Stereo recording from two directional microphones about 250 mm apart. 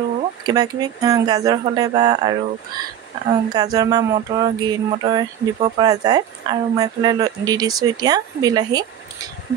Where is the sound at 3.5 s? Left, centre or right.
Centre.